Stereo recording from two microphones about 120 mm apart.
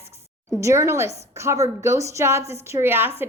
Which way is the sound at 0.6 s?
25° right (ahead or behind).